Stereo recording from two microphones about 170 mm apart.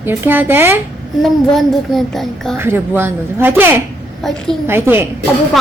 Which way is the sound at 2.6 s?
15° right (ahead or behind).